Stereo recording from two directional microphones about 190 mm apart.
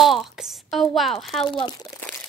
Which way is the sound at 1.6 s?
20° left (ahead or behind).